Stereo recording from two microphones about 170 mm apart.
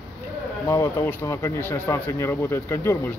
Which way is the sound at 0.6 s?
20° left (ahead or behind).